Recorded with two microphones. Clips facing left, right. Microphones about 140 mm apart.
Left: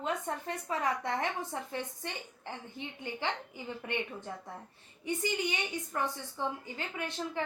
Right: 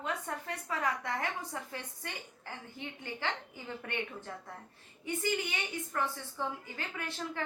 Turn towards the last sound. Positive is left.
turn(degrees=20)  # may be behind; listen again after turning